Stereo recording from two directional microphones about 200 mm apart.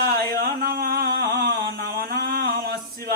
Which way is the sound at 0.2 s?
50° right (ahead or behind).